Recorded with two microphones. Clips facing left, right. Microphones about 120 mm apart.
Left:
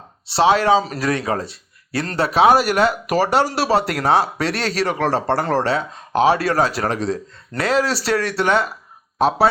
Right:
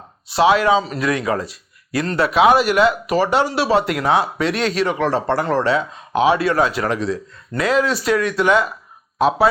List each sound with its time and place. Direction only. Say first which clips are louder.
0.3 s speech: even; 30° left (ahead or behind)